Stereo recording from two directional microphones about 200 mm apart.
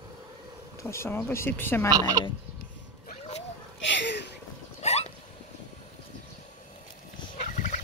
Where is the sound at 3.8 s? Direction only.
65° left (ahead or behind).